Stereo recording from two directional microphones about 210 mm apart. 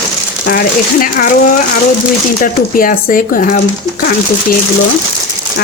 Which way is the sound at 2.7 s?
40° left (ahead or behind).